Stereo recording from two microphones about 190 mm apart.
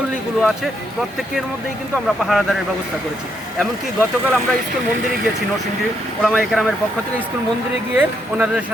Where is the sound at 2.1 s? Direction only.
Centre (ahead or behind).